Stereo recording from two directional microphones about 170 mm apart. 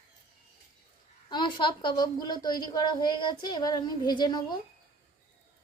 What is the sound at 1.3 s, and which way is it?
A woman's voice, 30° left (ahead or behind).